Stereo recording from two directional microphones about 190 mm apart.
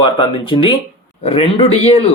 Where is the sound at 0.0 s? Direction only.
25° left (ahead or behind).